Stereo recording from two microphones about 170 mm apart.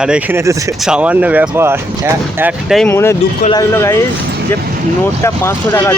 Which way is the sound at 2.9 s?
15° left (ahead or behind).